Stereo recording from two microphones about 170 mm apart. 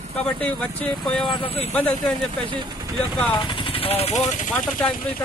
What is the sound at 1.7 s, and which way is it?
Speech, 5° left (ahead or behind).